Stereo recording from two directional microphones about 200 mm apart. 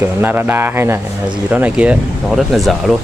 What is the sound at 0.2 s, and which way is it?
Speech, 10° right (ahead or behind).